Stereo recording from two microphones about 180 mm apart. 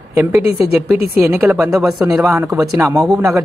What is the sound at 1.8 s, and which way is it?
Speech, 15° right (ahead or behind).